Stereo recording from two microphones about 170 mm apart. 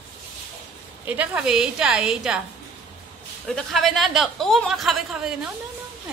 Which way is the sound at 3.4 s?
Centre (ahead or behind).